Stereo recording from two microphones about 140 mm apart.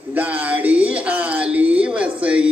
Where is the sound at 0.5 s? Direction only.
10° right (ahead or behind).